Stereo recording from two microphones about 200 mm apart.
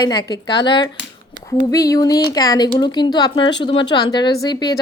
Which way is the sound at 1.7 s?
15° left (ahead or behind).